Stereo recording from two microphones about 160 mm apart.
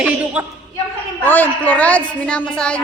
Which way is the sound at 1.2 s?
10° left (ahead or behind).